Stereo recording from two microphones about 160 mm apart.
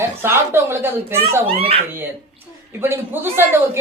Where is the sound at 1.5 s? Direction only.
35° right (ahead or behind).